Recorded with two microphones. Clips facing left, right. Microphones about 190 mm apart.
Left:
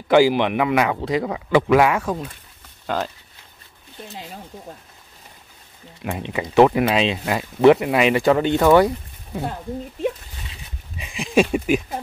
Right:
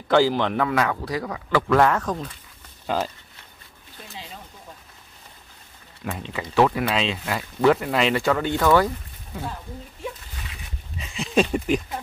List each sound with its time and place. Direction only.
0.1 s speech: 10° left (ahead or behind)
6.0 s speech: 15° left (ahead or behind)
11.0 s a sound: 10° left (ahead or behind)